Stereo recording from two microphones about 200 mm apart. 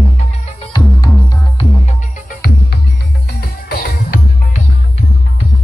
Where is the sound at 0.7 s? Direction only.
20° left (ahead or behind).